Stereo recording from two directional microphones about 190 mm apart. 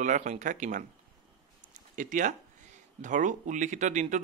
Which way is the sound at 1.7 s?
40° right (ahead or behind).